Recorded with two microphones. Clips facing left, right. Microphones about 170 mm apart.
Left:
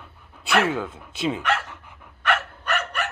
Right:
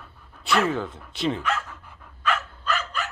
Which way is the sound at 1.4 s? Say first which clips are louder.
Left 3 dB; 80° left.